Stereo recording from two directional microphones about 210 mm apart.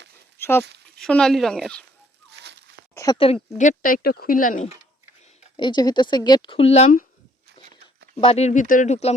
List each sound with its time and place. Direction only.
0.3 s dog: 10° left (ahead or behind)
0.9 s speech: 5° left (ahead or behind)
2.9 s a sound: 15° left (ahead or behind)
3.6 s speech: 40° left (ahead or behind)
5.5 s a woman's voice: 20° left (ahead or behind)
8.2 s speech: 30° left (ahead or behind)